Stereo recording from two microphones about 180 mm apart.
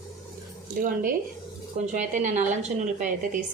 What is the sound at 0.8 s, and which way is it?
A woman's voice, 50° right (ahead or behind).